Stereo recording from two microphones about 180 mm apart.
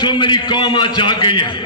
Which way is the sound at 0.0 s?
25° left (ahead or behind).